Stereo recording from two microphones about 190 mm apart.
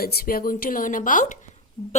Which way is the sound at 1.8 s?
20° left (ahead or behind).